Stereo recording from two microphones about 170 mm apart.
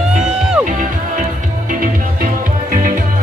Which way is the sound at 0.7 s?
50° right (ahead or behind).